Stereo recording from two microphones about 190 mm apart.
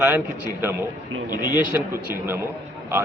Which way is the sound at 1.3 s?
20° left (ahead or behind).